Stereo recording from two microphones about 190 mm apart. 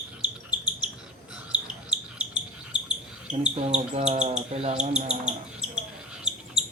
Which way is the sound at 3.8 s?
35° right (ahead or behind).